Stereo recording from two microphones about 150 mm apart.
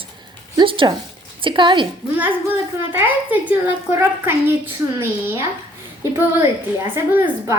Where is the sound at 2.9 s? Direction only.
15° right (ahead or behind).